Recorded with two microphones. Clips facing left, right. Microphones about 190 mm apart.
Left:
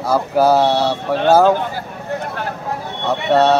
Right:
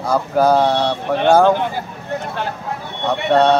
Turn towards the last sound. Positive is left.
turn(degrees=5)  # may be behind; listen again after turning